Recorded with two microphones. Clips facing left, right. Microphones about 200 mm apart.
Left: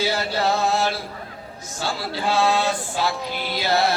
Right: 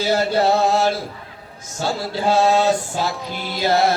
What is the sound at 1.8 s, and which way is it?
Mantra, 45° right (ahead or behind).